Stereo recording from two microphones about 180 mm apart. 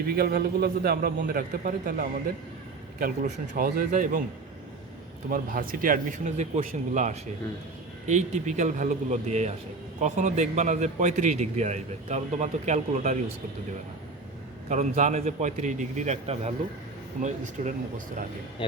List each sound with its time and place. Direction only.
0.2 s a man's voice: 60° right (ahead or behind)
5.3 s a man's voice: 50° right (ahead or behind)
14.7 s a man's voice: 40° right (ahead or behind)